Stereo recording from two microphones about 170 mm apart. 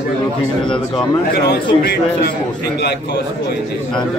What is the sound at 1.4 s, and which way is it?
Speech, 65° left (ahead or behind).